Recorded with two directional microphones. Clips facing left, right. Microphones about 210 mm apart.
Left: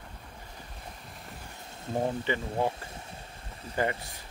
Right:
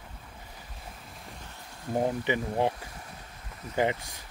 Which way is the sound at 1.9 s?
20° right (ahead or behind).